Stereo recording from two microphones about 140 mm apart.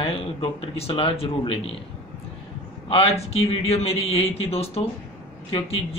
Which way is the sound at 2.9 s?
45° left (ahead or behind).